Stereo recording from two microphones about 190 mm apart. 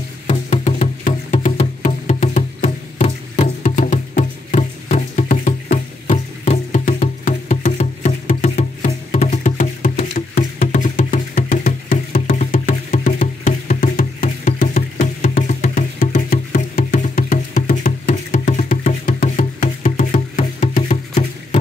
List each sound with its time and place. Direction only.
0.3 s music: 35° left (ahead or behind)
7.2 s music: 45° left (ahead or behind)